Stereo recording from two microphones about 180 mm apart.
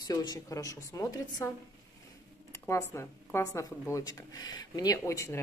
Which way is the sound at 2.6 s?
15° left (ahead or behind).